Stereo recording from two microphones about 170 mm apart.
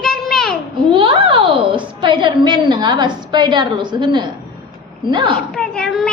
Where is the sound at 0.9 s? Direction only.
30° right (ahead or behind).